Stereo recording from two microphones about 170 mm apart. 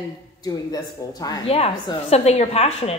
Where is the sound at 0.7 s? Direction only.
20° left (ahead or behind).